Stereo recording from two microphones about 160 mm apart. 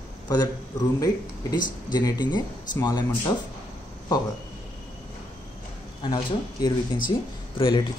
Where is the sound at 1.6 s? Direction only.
25° left (ahead or behind).